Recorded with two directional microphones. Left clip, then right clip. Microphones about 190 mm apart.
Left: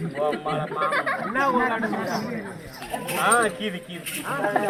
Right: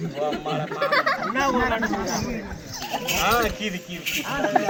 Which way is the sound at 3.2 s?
20° right (ahead or behind).